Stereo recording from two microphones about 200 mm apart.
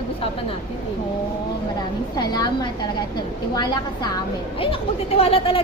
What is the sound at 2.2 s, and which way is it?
A woman's voice, 20° left (ahead or behind).